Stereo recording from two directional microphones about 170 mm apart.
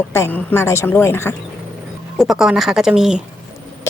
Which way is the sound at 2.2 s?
5° right (ahead or behind).